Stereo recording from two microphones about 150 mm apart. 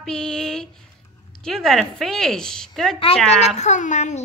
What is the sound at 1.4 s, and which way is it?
A woman's voice, 5° left (ahead or behind).